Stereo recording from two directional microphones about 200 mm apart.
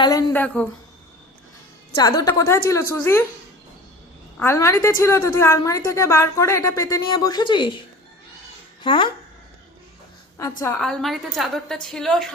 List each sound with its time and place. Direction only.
0.0 s a woman's voice: 20° left (ahead or behind)
0.4 s a woman's voice: 5° left (ahead or behind)
2.0 s a woman's voice: 20° left (ahead or behind)
4.4 s a woman's voice: 15° left (ahead or behind)
8.8 s speech: 25° left (ahead or behind)
10.8 s a woman's voice: centre (ahead or behind)